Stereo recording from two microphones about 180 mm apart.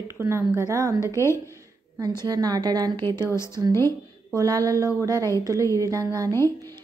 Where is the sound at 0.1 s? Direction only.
15° right (ahead or behind).